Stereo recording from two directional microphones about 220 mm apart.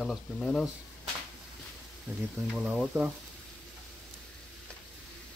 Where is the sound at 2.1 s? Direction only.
5° left (ahead or behind).